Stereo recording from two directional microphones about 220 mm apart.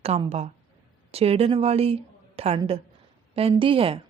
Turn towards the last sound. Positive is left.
turn(degrees=-25)  # may be behind; listen again after turning